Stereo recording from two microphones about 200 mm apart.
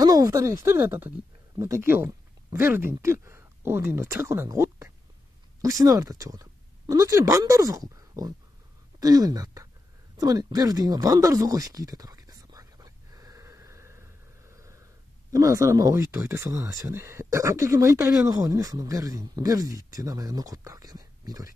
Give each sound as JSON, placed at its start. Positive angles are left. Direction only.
{"t": 0.0, "sound": "speech", "side_deg": -15}
{"t": 10.1, "sound": "a sound", "side_deg": -20}
{"t": 15.3, "sound": "speech", "side_deg": -15}